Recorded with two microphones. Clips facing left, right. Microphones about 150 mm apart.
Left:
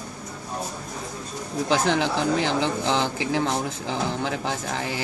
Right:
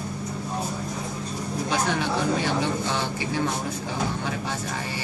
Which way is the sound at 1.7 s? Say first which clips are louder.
Left 4 dB; 90° left.